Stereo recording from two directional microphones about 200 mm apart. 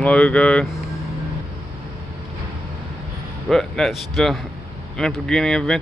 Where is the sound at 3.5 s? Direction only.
Centre (ahead or behind).